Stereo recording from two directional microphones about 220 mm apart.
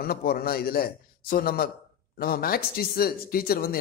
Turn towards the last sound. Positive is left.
turn(degrees=40)  # may be behind; listen again after turning